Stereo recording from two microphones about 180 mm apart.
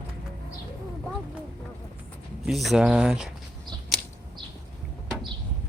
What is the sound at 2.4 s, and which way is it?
Speech, centre (ahead or behind).